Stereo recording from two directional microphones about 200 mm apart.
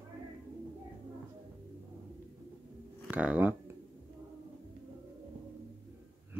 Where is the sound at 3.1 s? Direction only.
5° right (ahead or behind).